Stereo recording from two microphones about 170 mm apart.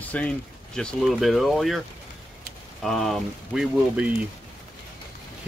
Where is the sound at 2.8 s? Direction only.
Centre (ahead or behind).